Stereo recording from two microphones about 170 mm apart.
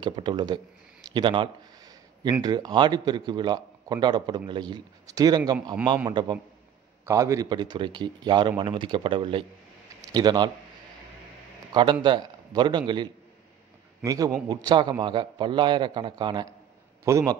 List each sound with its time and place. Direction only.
0.0 s speech: 25° right (ahead or behind)
1.1 s a sound: 30° right (ahead or behind)
2.4 s speech: 25° right (ahead or behind)
11.7 s speech: 25° right (ahead or behind)